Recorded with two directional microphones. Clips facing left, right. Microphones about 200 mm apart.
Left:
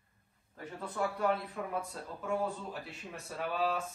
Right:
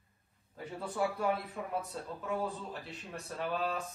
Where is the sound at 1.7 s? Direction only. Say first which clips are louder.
Right 1 dB; centre (ahead or behind).